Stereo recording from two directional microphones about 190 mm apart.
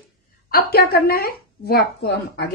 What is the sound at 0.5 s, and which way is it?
A woman's voice, 55° left (ahead or behind).